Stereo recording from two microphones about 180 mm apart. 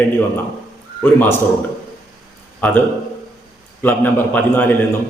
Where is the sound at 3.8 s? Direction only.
10° left (ahead or behind).